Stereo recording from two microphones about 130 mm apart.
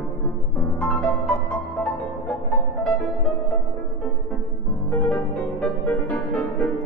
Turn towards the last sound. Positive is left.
turn(degrees=10)  # may be behind; listen again after turning